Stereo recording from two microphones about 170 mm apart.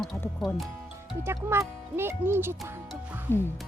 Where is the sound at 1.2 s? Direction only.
15° right (ahead or behind).